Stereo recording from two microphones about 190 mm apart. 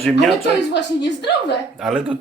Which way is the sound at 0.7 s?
65° left (ahead or behind).